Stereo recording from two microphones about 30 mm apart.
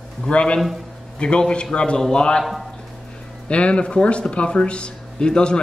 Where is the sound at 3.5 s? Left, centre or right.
Left.